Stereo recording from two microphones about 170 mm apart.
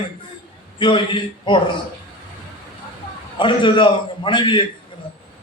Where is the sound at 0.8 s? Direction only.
30° left (ahead or behind).